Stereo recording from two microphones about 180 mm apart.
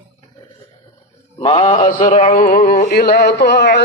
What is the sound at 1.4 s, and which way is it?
Mantra, 30° left (ahead or behind).